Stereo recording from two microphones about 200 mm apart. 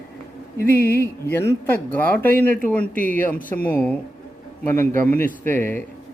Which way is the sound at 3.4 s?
45° left (ahead or behind).